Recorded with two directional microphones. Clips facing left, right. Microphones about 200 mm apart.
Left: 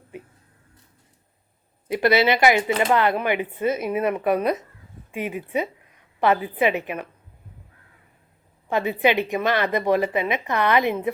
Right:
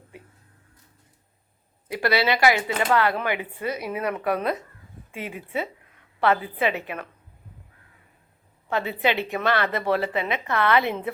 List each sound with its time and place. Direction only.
0.1 s a sound: 20° left (ahead or behind)
1.9 s a woman's voice: 20° left (ahead or behind)
8.7 s a woman's voice: 15° left (ahead or behind)